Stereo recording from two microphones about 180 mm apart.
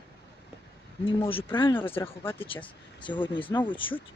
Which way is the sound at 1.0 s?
30° left (ahead or behind).